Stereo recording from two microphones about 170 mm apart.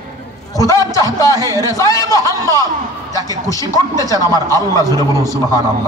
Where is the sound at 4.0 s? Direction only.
20° left (ahead or behind).